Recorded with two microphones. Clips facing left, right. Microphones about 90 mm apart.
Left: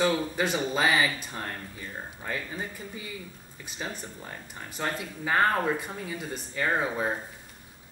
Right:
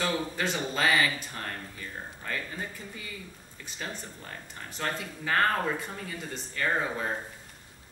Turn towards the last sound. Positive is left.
turn(degrees=15)  # may be behind; listen again after turning